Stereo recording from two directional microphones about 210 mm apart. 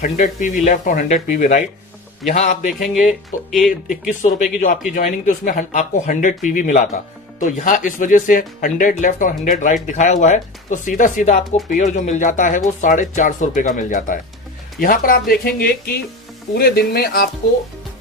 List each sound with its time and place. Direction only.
0.0 s speech: 35° left (ahead or behind)
2.6 s speech: centre (ahead or behind)
4.9 s speech: 40° left (ahead or behind)